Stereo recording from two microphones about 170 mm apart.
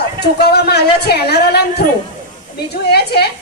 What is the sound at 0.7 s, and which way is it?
Speech, 70° left (ahead or behind).